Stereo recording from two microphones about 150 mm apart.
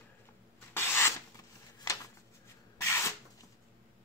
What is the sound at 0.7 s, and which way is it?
Rub, 15° left (ahead or behind).